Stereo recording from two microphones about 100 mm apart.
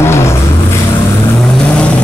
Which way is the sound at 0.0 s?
30° left (ahead or behind).